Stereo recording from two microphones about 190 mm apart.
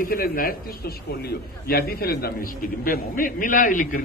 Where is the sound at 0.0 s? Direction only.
50° left (ahead or behind).